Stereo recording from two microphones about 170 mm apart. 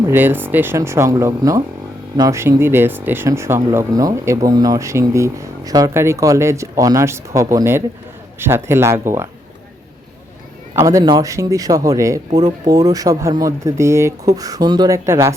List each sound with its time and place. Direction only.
0.1 s speech: 10° right (ahead or behind)
10.8 s speech: 20° right (ahead or behind)